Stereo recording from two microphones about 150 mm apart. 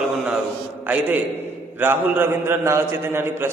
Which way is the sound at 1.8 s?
15° right (ahead or behind).